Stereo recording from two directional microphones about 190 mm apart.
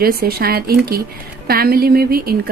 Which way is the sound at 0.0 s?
50° right (ahead or behind).